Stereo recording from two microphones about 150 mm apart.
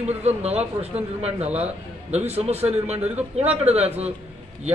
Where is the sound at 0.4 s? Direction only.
45° right (ahead or behind).